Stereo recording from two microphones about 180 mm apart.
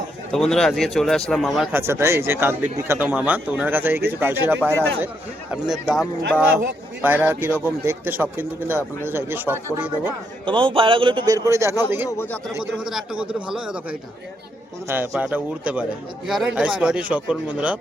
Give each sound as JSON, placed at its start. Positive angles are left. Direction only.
{"t": 0.3, "sound": "speech", "side_deg": 5}
{"t": 1.9, "sound": "a man's voice", "side_deg": -15}
{"t": 5.8, "sound": "a man's voice", "side_deg": 0}
{"t": 10.4, "sound": "a man's voice", "side_deg": -25}
{"t": 12.0, "sound": "speech", "side_deg": 15}
{"t": 12.8, "sound": "speech", "side_deg": 0}
{"t": 14.8, "sound": "a man's voice", "side_deg": -15}